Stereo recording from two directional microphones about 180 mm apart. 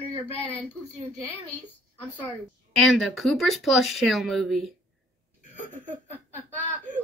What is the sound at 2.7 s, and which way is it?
Speech, centre (ahead or behind).